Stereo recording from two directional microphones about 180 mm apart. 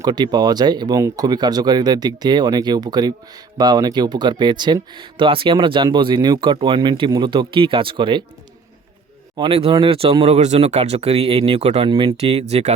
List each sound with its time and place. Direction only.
0.0 s speech: 25° right (ahead or behind)
9.4 s speech: 30° right (ahead or behind)